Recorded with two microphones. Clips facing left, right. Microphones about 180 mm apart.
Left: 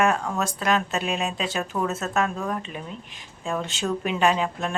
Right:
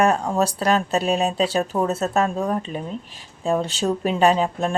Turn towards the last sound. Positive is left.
turn(degrees=-35)  # may be behind; listen again after turning